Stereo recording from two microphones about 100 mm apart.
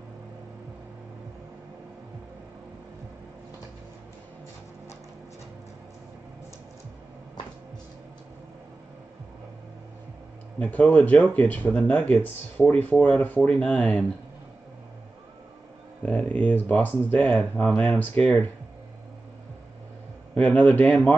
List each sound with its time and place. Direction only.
10.6 s speech: 15° left (ahead or behind)
16.1 s speech: 15° left (ahead or behind)
20.3 s a man's voice: 15° left (ahead or behind)
20.8 s speech: centre (ahead or behind)